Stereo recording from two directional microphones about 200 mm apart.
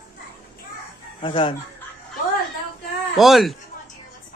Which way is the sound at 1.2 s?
25° left (ahead or behind).